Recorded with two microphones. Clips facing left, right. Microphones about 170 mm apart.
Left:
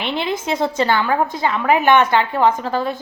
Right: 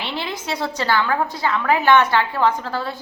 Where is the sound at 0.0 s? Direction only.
20° left (ahead or behind).